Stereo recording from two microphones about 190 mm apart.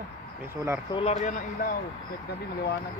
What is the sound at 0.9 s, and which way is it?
Speech, 35° left (ahead or behind).